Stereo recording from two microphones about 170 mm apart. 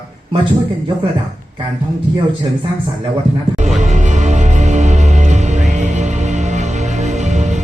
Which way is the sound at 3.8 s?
45° right (ahead or behind).